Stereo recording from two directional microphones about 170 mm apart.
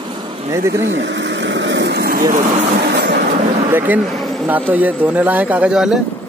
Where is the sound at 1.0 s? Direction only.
90° right; by 2.2 s 65° right (ahead or behind).